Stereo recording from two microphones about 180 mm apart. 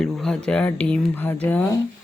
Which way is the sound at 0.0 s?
5° left (ahead or behind).